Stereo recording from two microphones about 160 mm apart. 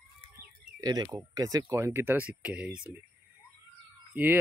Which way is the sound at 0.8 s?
25° right (ahead or behind).